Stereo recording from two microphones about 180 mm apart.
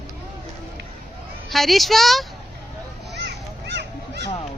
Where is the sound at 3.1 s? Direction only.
70° right (ahead or behind).